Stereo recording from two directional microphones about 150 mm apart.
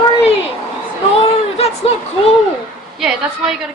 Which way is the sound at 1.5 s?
45° left (ahead or behind).